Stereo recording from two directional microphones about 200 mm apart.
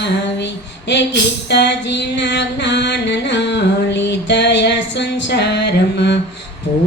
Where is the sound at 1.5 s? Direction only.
60° left (ahead or behind).